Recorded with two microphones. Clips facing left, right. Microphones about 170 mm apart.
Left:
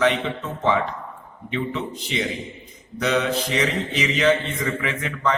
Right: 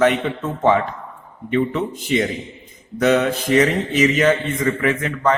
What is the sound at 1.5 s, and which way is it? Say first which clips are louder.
Mantra: right 7 dB; 50° right (ahead or behind).